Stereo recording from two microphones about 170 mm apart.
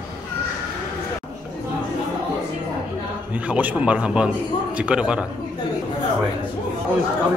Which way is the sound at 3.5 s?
10° right (ahead or behind).